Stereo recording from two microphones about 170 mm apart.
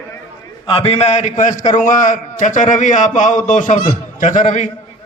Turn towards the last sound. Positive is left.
turn(degrees=50)  # may be behind; listen again after turning